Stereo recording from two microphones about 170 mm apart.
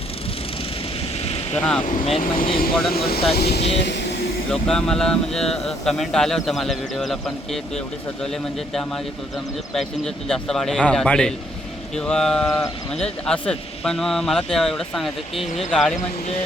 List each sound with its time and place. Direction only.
1.2 s vehicle: 35° left (ahead or behind)
1.5 s speech: 5° left (ahead or behind)
1.8 s speech: 50° left (ahead or behind); by 4.0 s 90° left
4.5 s speech: 5° left (ahead or behind)